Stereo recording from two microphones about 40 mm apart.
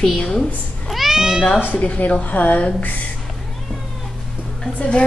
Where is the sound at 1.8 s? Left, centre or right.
Left.